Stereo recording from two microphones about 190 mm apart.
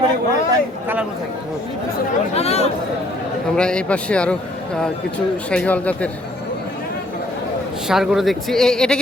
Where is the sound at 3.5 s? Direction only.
5° left (ahead or behind).